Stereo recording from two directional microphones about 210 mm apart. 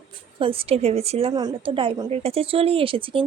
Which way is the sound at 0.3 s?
25° right (ahead or behind).